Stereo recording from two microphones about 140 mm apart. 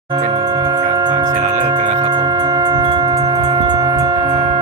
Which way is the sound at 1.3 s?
65° right (ahead or behind).